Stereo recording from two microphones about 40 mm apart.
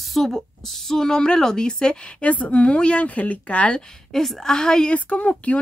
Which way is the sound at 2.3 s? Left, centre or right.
Left.